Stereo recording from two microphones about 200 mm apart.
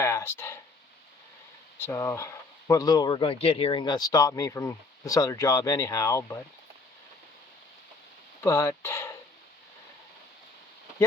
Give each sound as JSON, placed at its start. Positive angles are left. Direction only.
{"t": 0.0, "sound": "a sound", "side_deg": 15}
{"t": 1.8, "sound": "speech", "side_deg": 10}
{"t": 8.4, "sound": "speech", "side_deg": 10}